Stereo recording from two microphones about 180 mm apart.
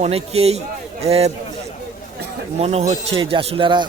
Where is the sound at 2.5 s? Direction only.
35° right (ahead or behind).